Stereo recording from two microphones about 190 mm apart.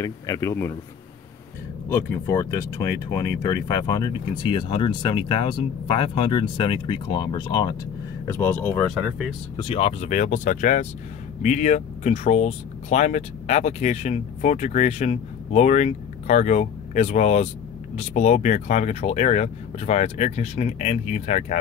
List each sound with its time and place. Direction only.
0.0 s speech: 15° left (ahead or behind)
1.9 s speech: 15° left (ahead or behind)
8.3 s speech: 10° left (ahead or behind)
9.6 s speech: 30° left (ahead or behind)